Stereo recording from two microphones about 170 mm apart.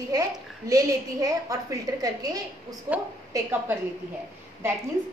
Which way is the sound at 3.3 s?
10° right (ahead or behind).